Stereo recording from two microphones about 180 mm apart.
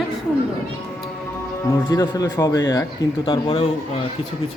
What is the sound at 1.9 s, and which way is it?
Speech, 20° left (ahead or behind).